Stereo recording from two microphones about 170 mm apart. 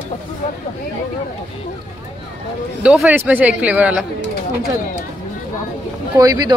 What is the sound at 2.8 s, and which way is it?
Speech, 5° right (ahead or behind).